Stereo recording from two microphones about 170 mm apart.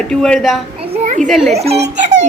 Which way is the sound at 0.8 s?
45° right (ahead or behind).